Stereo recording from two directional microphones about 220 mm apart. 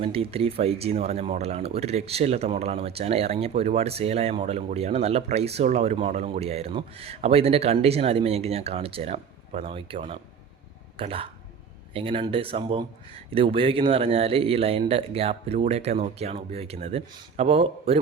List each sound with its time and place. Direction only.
0.0 s speech: 25° right (ahead or behind)